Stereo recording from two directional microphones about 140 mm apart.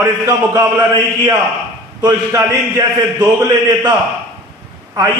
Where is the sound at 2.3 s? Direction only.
20° right (ahead or behind).